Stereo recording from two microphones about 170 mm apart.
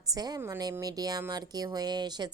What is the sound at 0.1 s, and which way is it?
A woman's voice, 20° right (ahead or behind).